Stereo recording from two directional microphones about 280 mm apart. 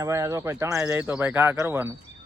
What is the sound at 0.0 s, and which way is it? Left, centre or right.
Speech, centre.